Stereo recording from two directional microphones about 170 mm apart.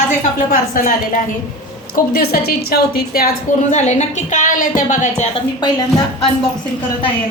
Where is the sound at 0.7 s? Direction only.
55° left (ahead or behind).